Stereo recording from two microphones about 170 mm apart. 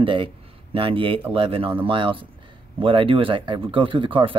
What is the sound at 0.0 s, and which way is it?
Speech, 30° right (ahead or behind).